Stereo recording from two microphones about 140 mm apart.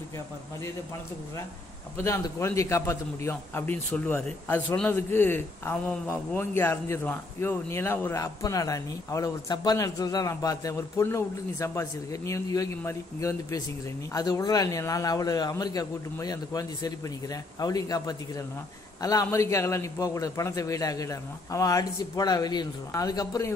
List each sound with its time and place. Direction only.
2.0 s a man's voice: 15° left (ahead or behind)